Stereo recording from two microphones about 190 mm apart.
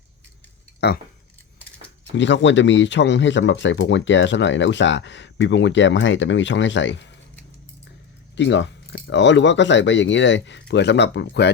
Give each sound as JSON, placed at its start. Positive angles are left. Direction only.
{"t": 0.8, "sound": "speech", "side_deg": 60}
{"t": 2.1, "sound": "speech", "side_deg": 70}
{"t": 8.4, "sound": "speech", "side_deg": 70}